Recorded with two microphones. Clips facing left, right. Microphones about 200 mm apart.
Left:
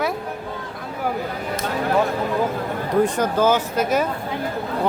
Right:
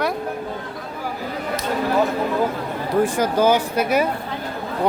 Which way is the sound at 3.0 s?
10° right (ahead or behind).